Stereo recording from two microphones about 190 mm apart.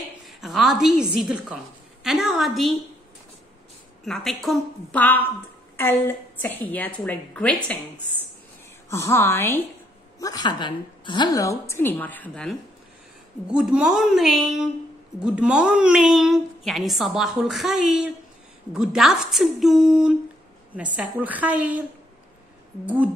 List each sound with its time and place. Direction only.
0.3 s a woman's voice: centre (ahead or behind)
4.0 s a woman's voice: centre (ahead or behind)
8.9 s a woman's voice: 15° left (ahead or behind)
13.5 s a woman's voice: 5° right (ahead or behind)